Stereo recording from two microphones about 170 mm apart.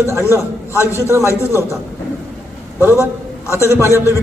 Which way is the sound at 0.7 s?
15° left (ahead or behind).